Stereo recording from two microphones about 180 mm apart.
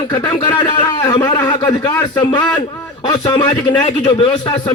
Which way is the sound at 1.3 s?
25° left (ahead or behind).